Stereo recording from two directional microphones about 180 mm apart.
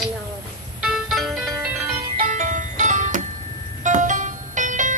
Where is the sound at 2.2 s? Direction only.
45° right (ahead or behind).